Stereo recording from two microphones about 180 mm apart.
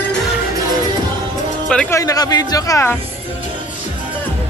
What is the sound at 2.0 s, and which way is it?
Speech, 20° left (ahead or behind).